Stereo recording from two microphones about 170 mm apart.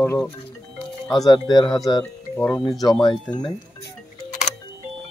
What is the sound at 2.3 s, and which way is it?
Speech, 10° left (ahead or behind).